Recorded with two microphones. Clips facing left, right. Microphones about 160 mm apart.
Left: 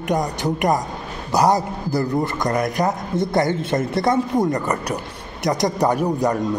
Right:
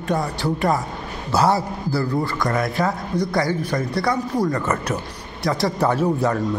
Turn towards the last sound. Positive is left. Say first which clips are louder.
# even
turn(degrees=15)  # may be behind; listen again after turning